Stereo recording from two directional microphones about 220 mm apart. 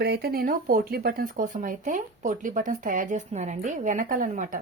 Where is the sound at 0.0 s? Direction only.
50° right (ahead or behind).